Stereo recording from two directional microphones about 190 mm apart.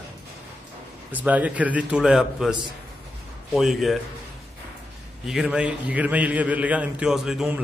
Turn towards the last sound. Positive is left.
turn(degrees=-5)  # may be behind; listen again after turning